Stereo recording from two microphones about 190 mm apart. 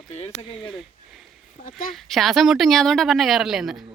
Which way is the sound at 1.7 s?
45° left (ahead or behind).